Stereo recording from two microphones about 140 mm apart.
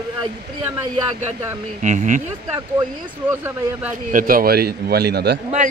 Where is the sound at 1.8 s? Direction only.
60° right (ahead or behind).